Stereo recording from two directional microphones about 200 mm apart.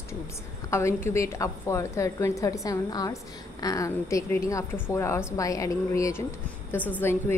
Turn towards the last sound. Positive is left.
turn(degrees=10)  # may be behind; listen again after turning